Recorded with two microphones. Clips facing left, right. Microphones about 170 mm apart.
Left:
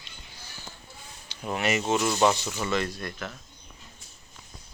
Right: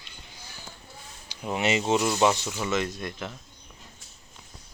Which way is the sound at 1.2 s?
15° right (ahead or behind).